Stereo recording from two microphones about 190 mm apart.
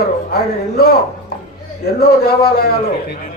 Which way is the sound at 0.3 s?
55° left (ahead or behind).